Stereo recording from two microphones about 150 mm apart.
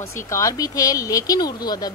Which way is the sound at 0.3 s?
20° left (ahead or behind).